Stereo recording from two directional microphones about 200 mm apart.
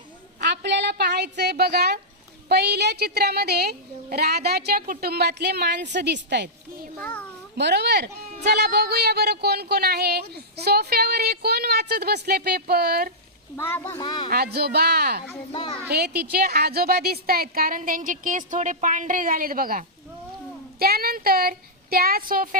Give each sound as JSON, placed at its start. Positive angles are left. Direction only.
{"t": 0.3, "sound": "a sound", "side_deg": -55}
{"t": 2.5, "sound": "speech", "side_deg": -55}
{"t": 7.0, "sound": "speech", "side_deg": 5}
{"t": 7.5, "sound": "speech", "side_deg": -55}
{"t": 13.6, "sound": "speech", "side_deg": 10}
{"t": 14.3, "sound": "speech", "side_deg": -50}
{"t": 15.5, "sound": "a child's voice", "side_deg": 25}
{"t": 15.9, "sound": "speech", "side_deg": -50}